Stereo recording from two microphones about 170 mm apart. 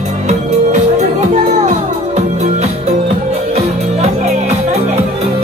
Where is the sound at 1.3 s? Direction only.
40° right (ahead or behind).